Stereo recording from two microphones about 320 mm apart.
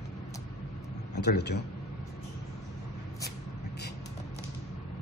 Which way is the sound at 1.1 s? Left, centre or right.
Left.